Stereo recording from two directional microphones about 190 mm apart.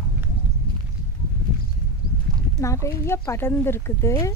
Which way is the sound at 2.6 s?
15° left (ahead or behind).